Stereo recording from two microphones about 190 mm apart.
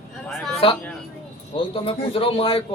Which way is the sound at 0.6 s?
25° left (ahead or behind).